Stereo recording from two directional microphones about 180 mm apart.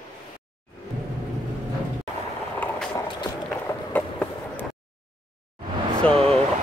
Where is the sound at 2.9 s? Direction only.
20° left (ahead or behind).